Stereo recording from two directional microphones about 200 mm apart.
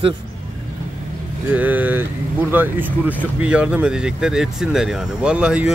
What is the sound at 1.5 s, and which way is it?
Speech, 10° right (ahead or behind).